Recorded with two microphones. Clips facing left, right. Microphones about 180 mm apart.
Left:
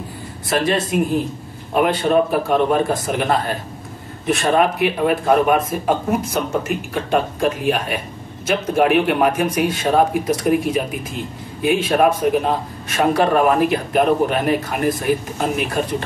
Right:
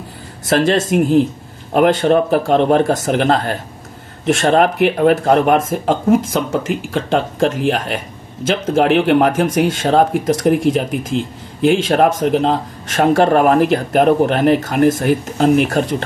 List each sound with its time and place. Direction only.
0.5 s speech: 90° right; by 3.5 s 70° right (ahead or behind)
4.3 s speech: 85° right
5.7 s speech: 90° right
13.2 s speech: 70° right (ahead or behind)